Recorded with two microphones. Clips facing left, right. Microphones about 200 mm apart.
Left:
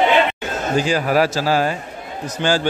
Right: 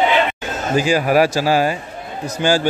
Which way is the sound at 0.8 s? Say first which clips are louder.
Right 3 dB; 10° right (ahead or behind).